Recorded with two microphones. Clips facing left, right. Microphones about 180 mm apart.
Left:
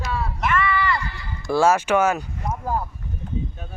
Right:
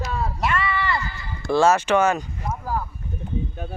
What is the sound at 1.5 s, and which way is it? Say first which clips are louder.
Speech: even; 10° left (ahead or behind).